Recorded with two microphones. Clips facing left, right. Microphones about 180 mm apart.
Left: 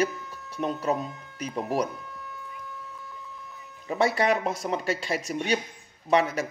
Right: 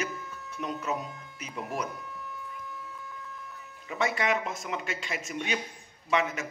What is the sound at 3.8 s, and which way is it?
Speech, 35° left (ahead or behind).